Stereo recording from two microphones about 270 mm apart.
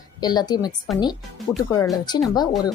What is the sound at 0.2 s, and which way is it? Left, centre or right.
Speech, centre.